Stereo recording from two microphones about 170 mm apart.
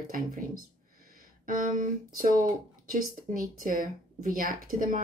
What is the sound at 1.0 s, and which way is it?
A woman's voice, 55° right (ahead or behind).